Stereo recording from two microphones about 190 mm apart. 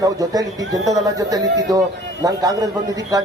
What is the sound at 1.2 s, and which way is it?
A man's voice, 20° right (ahead or behind).